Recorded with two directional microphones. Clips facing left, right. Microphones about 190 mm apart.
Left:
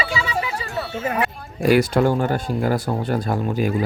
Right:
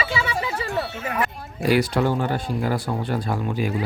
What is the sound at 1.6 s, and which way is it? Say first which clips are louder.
Speech: left 4 dB; 45° left (ahead or behind).